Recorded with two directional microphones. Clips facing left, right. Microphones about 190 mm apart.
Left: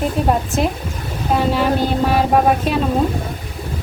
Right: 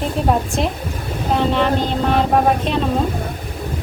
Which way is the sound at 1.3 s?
5° left (ahead or behind).